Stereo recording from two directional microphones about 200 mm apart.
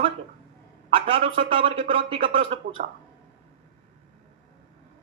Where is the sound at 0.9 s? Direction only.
25° right (ahead or behind).